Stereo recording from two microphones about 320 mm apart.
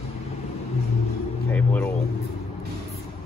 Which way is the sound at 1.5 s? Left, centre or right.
Centre.